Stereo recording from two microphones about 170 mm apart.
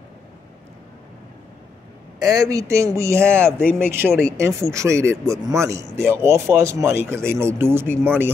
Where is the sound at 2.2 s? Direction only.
20° right (ahead or behind).